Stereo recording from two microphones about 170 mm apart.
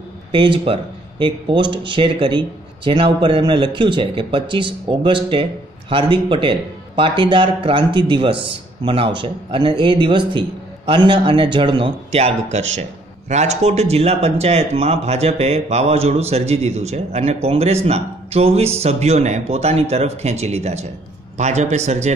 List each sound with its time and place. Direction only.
0.3 s speech: 30° right (ahead or behind)